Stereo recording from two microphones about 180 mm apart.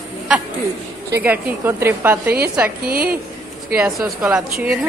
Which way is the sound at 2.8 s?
55° right (ahead or behind).